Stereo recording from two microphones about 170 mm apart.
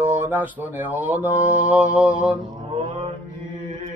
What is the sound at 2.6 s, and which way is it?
Mantra, 35° right (ahead or behind).